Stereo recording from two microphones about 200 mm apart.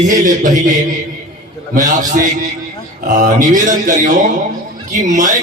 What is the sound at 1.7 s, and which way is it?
Speech, 40° right (ahead or behind).